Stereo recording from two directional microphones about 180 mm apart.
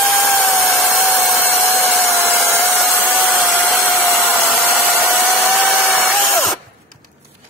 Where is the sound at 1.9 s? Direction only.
Centre (ahead or behind).